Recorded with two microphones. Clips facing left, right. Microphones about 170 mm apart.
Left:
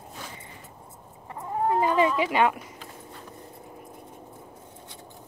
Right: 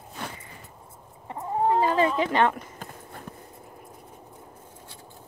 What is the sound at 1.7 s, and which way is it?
Cat, 15° left (ahead or behind).